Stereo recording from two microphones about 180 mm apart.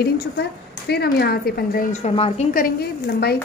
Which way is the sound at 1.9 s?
35° left (ahead or behind).